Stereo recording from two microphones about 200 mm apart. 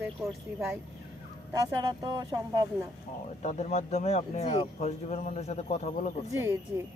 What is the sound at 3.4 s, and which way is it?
Speech, 35° left (ahead or behind).